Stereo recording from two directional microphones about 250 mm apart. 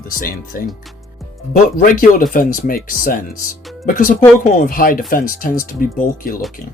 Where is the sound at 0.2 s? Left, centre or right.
Left.